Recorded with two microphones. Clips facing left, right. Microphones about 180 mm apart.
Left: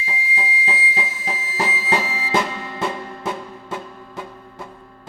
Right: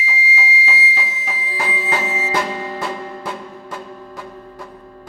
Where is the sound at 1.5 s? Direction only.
25° left (ahead or behind).